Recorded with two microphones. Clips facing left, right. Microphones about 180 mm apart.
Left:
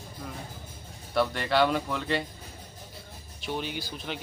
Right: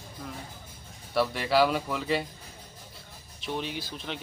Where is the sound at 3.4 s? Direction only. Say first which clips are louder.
Even; centre (ahead or behind).